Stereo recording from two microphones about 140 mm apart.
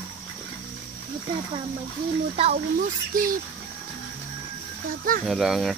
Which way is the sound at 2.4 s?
45° right (ahead or behind).